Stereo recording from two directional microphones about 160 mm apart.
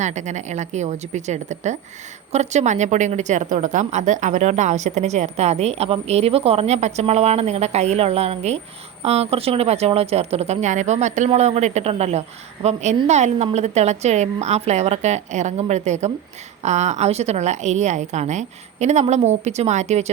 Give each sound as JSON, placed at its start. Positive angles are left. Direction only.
{"t": 0.0, "sound": "a woman's voice", "side_deg": -45}